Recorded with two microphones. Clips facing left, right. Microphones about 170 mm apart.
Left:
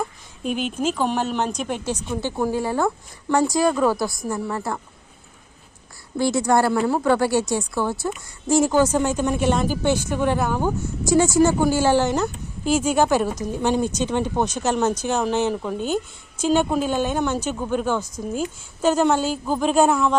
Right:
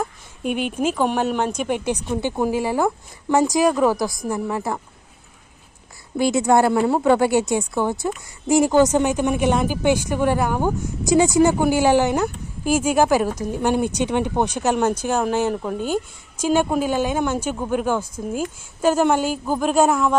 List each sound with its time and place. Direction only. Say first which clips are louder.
0.4 s speech: right 2 dB; 65° right (ahead or behind)
0.9 s a woman's voice: right 2 dB; 10° right (ahead or behind)
6.1 s a woman's voice: right 2 dB; 20° right (ahead or behind)